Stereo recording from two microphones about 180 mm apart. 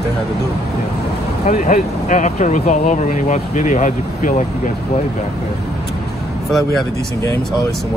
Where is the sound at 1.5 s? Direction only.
45° left (ahead or behind).